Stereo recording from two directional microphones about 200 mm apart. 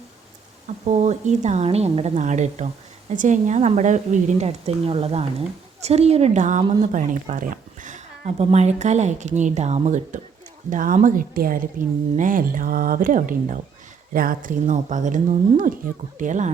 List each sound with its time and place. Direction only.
0.9 s speech: 35° right (ahead or behind)